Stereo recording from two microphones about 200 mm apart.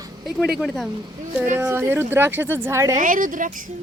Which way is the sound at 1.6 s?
10° right (ahead or behind).